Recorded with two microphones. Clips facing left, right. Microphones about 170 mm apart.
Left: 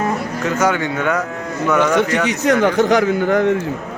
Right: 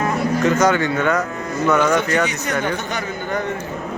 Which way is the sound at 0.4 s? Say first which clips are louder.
Even; 10° left (ahead or behind).